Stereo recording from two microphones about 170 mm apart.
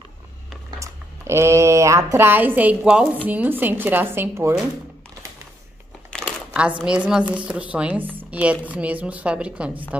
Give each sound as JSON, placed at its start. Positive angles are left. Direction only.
{"t": 0.7, "sound": "speech", "side_deg": -15}
{"t": 6.2, "sound": "speech", "side_deg": -5}